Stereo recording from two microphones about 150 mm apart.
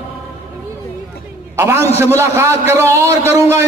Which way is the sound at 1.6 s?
15° right (ahead or behind).